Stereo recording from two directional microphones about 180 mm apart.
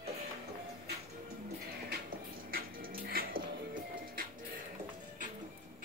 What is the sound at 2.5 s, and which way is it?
Music, 55° right (ahead or behind).